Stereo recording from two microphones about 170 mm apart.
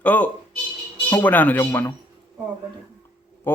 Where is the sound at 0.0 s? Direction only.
10° left (ahead or behind).